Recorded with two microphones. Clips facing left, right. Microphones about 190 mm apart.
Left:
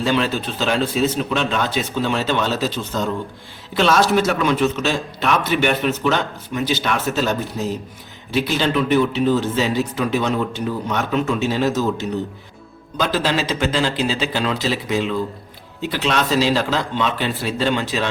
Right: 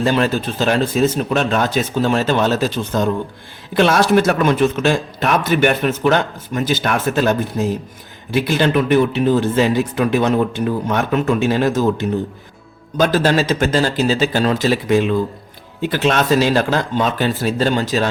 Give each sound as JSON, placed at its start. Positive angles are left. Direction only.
{"t": 0.0, "sound": "speech", "side_deg": -45}